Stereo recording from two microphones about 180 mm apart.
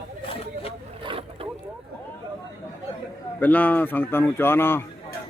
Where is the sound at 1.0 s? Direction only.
30° right (ahead or behind).